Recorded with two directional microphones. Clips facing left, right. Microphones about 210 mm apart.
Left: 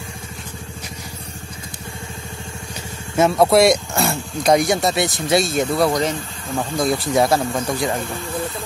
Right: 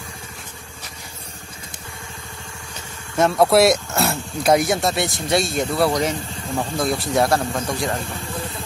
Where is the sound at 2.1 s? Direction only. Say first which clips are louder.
Left 4 dB; 25° left (ahead or behind).